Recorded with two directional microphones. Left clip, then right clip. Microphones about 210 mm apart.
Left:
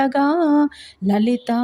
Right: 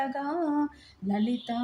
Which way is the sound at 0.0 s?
40° left (ahead or behind).